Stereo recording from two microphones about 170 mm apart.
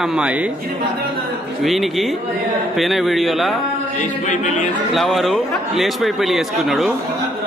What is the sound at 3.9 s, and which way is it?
Chant, 45° left (ahead or behind).